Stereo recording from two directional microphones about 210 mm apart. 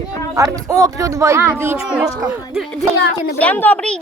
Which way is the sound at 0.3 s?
15° right (ahead or behind).